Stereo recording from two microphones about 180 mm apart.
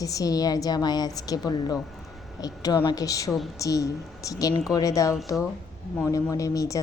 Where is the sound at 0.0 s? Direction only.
20° left (ahead or behind).